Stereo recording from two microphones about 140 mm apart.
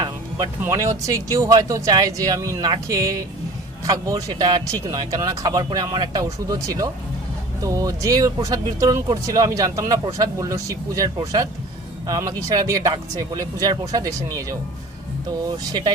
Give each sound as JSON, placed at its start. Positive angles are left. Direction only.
{"t": 0.0, "sound": "music", "side_deg": -30}
{"t": 0.6, "sound": "speech", "side_deg": -20}